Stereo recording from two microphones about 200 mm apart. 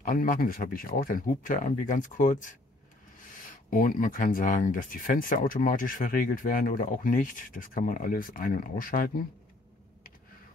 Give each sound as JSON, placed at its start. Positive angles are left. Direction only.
{"t": 0.0, "sound": "speech", "side_deg": 45}